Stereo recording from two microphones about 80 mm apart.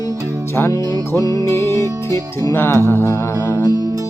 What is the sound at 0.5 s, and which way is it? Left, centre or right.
Music, left.